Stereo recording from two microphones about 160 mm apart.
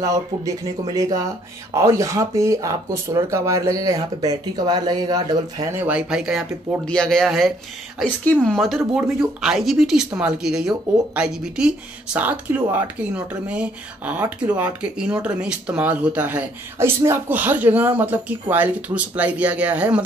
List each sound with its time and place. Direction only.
0.0 s speech: 25° right (ahead or behind)
5.8 s speech: 10° right (ahead or behind)